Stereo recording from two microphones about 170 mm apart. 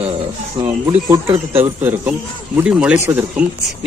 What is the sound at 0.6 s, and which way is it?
A man's voice, 20° right (ahead or behind).